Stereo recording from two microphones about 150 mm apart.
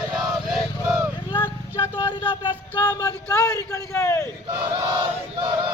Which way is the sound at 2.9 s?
25° left (ahead or behind).